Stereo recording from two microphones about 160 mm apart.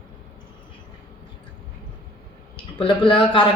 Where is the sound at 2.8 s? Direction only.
30° left (ahead or behind).